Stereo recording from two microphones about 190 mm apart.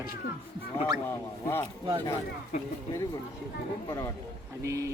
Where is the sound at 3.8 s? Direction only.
15° left (ahead or behind).